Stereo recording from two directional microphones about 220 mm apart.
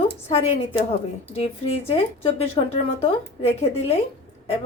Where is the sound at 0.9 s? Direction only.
30° left (ahead or behind).